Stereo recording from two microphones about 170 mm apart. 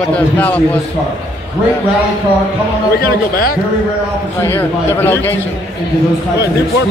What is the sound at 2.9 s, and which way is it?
Speech, 60° left (ahead or behind).